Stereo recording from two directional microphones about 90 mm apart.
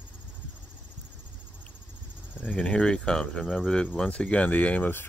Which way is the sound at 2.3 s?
15° left (ahead or behind).